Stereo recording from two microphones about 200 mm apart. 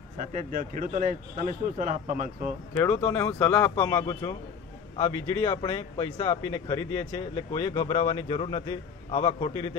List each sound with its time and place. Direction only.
0.2 s a man's voice: 40° right (ahead or behind)
2.8 s a man's voice: 15° left (ahead or behind)